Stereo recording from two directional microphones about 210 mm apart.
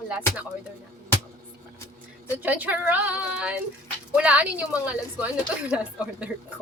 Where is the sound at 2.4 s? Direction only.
5° right (ahead or behind).